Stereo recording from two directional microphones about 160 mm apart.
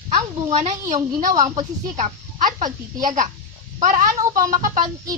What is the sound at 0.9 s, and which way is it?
A child's voice, 50° right (ahead or behind).